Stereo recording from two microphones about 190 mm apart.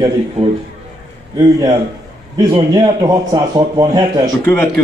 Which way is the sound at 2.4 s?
20° right (ahead or behind).